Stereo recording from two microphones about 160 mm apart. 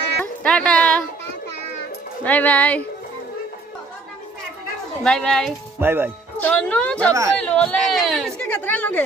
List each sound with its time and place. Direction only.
0.2 s a sound: 5° left (ahead or behind)
2.2 s speech: 10° left (ahead or behind)
5.0 s speech: 5° left (ahead or behind)
5.8 s speech: 15° right (ahead or behind)
6.4 s speech: 10° left (ahead or behind)